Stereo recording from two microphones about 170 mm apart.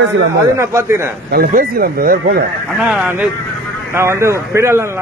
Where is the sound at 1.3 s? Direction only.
55° right (ahead or behind).